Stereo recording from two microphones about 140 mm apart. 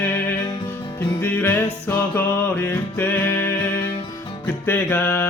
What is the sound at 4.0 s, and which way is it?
Music, 30° left (ahead or behind).